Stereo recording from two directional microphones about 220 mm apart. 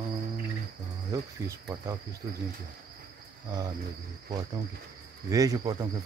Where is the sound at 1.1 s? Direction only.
15° right (ahead or behind).